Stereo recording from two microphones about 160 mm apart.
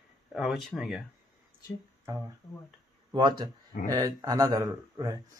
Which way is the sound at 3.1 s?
30° right (ahead or behind).